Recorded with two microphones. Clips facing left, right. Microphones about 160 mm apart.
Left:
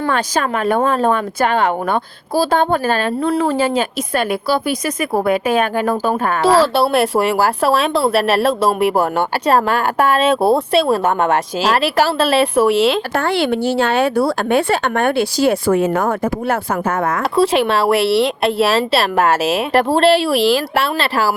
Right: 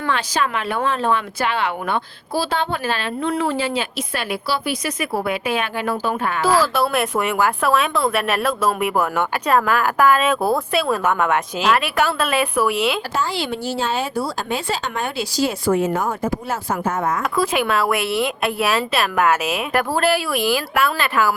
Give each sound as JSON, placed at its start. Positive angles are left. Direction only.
{"t": 0.1, "sound": "speech", "side_deg": 45}
{"t": 6.4, "sound": "speech", "side_deg": 30}
{"t": 13.1, "sound": "speech", "side_deg": 60}
{"t": 17.3, "sound": "speech", "side_deg": 30}